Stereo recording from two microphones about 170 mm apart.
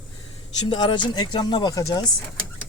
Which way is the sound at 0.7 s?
25° left (ahead or behind).